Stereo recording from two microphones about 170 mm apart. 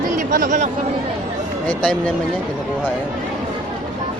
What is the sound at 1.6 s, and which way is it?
Speech, 5° left (ahead or behind).